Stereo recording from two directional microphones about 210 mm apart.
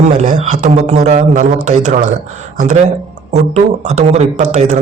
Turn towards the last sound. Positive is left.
turn(degrees=-30)  # may be behind; listen again after turning